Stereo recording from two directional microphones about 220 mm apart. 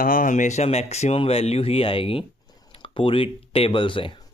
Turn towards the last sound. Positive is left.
turn(degrees=25)  # may be behind; listen again after turning